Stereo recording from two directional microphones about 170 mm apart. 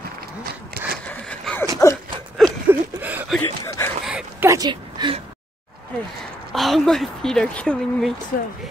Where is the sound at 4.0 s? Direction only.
5° right (ahead or behind).